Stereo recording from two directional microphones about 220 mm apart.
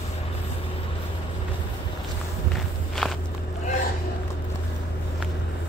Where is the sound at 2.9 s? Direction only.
Centre (ahead or behind).